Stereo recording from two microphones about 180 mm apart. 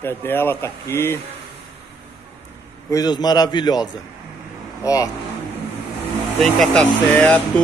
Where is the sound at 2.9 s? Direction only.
20° left (ahead or behind).